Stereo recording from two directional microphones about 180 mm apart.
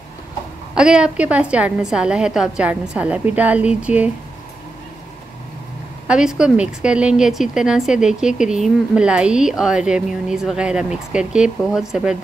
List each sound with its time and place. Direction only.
0.7 s a woman's voice: 5° right (ahead or behind)
6.0 s speech: 5° right (ahead or behind)